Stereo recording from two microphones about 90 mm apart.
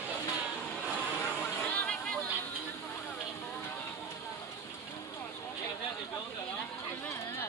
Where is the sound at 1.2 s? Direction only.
25° left (ahead or behind).